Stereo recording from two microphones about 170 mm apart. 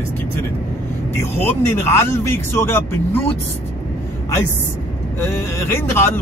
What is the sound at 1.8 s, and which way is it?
Speech, 15° left (ahead or behind).